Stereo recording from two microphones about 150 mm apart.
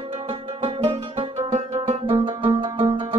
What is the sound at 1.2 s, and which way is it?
Music, 45° right (ahead or behind).